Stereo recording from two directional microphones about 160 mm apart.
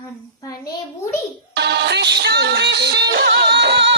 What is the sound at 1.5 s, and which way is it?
Music, 90° right.